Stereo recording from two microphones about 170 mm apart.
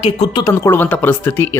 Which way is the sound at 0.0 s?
25° left (ahead or behind).